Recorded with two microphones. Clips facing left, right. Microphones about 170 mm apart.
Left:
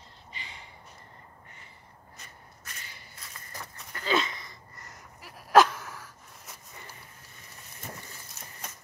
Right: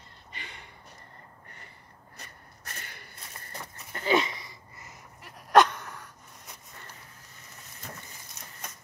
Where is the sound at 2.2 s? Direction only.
55° right (ahead or behind).